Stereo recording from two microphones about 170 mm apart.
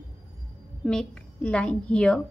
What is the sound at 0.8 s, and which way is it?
A woman's voice, 5° left (ahead or behind).